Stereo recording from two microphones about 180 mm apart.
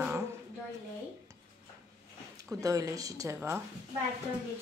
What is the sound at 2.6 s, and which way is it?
Speech, 20° right (ahead or behind).